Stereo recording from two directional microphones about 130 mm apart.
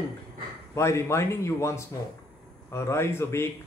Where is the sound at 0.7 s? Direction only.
20° left (ahead or behind).